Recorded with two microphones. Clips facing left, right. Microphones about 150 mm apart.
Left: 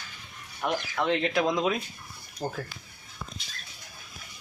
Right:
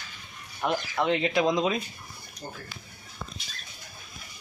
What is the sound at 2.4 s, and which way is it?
Speech, 90° left.